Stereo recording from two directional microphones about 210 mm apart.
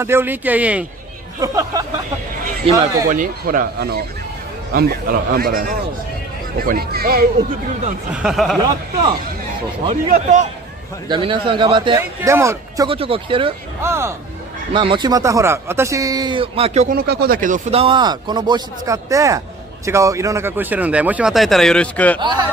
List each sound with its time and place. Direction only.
0.0 s speech: 10° right (ahead or behind)
3.1 s a man's voice: 40° right (ahead or behind)
8.1 s speech: 5° right (ahead or behind)
9.8 s a man's voice: 30° right (ahead or behind)
11.1 s speech: 25° right (ahead or behind)
12.0 s speech: 10° right (ahead or behind)
13.8 s speech: 10° right (ahead or behind)
14.7 s speech: 25° right (ahead or behind)
16.9 s speech: 45° right (ahead or behind); by 22.2 s 5° left (ahead or behind)
22.2 s speech: 20° right (ahead or behind)